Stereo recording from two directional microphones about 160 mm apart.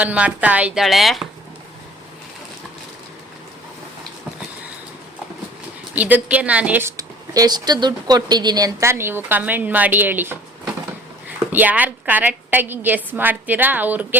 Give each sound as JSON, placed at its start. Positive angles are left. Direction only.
{"t": 0.0, "sound": "speech", "side_deg": -10}
{"t": 5.9, "sound": "speech", "side_deg": -10}
{"t": 6.9, "sound": "a woman's voice", "side_deg": -25}